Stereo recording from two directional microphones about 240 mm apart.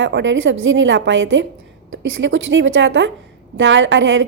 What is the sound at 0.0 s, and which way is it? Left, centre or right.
A woman's voice, right.